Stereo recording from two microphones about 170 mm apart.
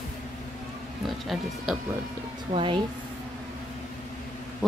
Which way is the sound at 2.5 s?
30° right (ahead or behind).